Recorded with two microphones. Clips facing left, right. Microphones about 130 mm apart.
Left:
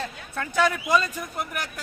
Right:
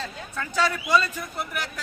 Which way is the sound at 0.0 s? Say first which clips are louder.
Left 1 dB; 55° left (ahead or behind).